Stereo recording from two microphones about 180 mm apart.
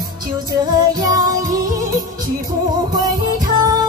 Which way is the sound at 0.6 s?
20° right (ahead or behind).